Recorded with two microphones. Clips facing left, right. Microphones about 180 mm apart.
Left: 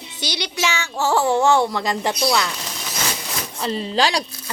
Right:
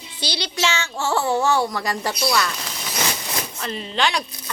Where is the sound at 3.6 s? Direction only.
30° left (ahead or behind).